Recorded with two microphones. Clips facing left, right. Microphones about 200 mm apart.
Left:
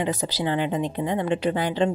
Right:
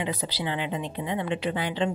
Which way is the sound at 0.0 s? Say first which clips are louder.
Left 5 dB; 45° left (ahead or behind).